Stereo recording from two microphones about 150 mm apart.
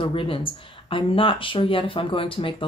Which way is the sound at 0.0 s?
35° left (ahead or behind).